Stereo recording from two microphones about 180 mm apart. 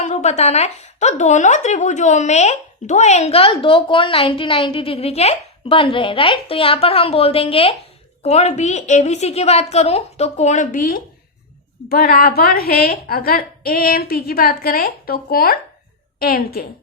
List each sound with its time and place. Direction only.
0.0 s a woman's voice: 40° left (ahead or behind); by 16.6 s 60° left (ahead or behind)